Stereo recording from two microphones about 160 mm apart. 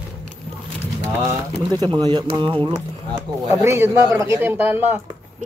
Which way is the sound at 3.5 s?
15° right (ahead or behind).